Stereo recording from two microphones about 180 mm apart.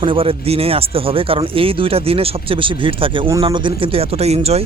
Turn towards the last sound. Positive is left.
turn(degrees=-35)  # may be behind; listen again after turning